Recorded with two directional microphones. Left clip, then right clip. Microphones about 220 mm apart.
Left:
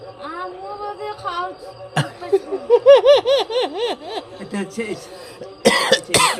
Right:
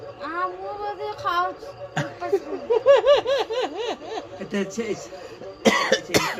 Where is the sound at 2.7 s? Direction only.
45° left (ahead or behind).